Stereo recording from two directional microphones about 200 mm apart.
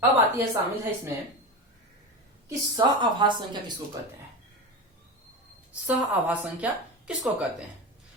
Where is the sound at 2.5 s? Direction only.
25° right (ahead or behind).